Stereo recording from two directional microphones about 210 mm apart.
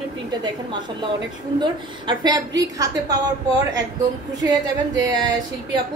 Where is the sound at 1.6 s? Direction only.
20° right (ahead or behind).